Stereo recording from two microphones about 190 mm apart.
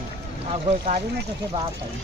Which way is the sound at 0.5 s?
40° right (ahead or behind).